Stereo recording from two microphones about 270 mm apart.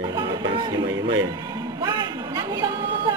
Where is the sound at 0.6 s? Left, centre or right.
Centre.